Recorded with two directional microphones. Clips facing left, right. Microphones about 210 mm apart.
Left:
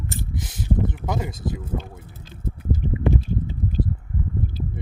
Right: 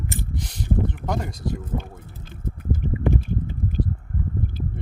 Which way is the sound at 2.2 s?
50° right (ahead or behind).